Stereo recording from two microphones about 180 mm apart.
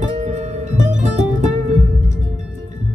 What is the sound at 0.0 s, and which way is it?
Music, 40° right (ahead or behind).